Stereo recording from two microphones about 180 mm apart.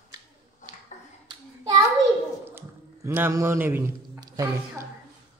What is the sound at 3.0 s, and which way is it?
A man's voice, 15° right (ahead or behind).